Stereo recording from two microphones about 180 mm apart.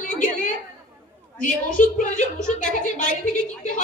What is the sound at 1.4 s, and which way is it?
A woman's voice, 45° left (ahead or behind).